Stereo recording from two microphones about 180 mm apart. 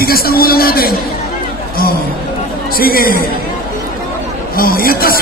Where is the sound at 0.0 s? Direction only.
55° left (ahead or behind).